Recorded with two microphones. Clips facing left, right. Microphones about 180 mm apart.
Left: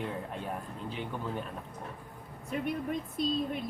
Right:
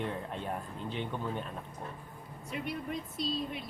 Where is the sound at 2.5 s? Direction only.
45° left (ahead or behind).